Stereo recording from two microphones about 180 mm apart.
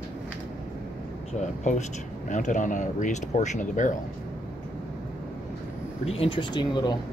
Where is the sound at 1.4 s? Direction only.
40° left (ahead or behind).